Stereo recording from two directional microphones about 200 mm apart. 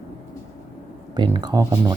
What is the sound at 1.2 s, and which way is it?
Speech, 20° right (ahead or behind).